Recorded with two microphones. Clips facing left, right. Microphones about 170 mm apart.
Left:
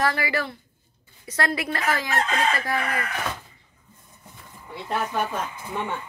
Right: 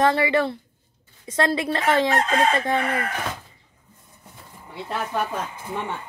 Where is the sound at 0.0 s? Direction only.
25° right (ahead or behind).